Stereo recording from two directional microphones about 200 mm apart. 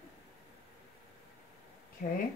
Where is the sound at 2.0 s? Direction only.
45° left (ahead or behind).